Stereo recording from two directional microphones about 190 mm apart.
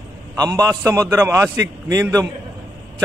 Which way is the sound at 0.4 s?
20° right (ahead or behind).